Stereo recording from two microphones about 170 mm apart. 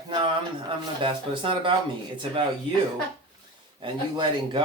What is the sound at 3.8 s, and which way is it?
Speech, 25° right (ahead or behind).